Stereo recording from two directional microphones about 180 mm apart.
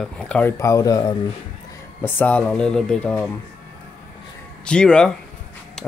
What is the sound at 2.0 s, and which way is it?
Speech, 10° left (ahead or behind).